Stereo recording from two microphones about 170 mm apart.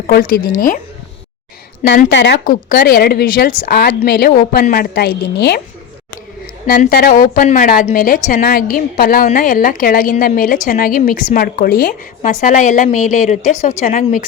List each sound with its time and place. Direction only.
0.1 s a woman's voice: 60° left (ahead or behind)
2.0 s a woman's voice: 90° left
2.4 s a woman's voice: 55° left (ahead or behind)
6.7 s a woman's voice: 60° left (ahead or behind)